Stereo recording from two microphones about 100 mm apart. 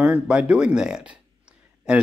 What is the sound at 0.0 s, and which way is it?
Speech, 10° right (ahead or behind).